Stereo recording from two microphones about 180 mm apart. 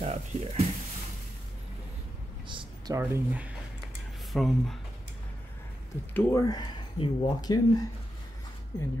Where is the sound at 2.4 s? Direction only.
25° right (ahead or behind).